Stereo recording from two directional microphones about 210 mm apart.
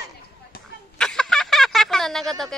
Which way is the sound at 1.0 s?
5° left (ahead or behind).